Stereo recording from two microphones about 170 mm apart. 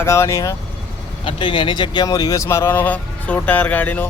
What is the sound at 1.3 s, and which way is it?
Speech, 30° left (ahead or behind).